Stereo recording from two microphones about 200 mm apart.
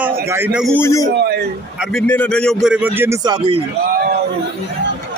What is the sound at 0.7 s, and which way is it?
Speech, 15° left (ahead or behind).